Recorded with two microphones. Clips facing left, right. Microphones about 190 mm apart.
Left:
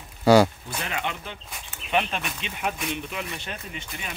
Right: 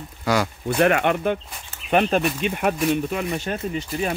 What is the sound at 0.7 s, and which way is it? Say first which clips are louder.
Speech: right 13 dB; 60° right (ahead or behind).